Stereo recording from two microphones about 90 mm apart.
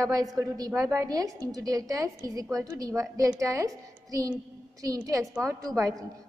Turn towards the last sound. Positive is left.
turn(degrees=-35)  # may be behind; listen again after turning